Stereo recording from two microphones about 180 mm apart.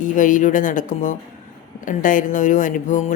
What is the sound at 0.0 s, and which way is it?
Speech, 45° left (ahead or behind).